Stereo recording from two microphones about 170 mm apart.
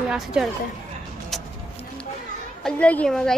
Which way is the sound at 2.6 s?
5° left (ahead or behind).